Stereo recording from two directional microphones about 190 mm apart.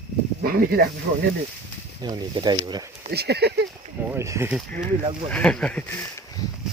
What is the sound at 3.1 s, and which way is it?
Speech, 60° right (ahead or behind).